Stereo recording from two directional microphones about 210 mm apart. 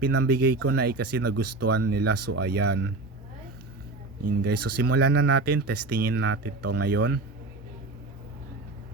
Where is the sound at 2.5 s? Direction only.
50° right (ahead or behind).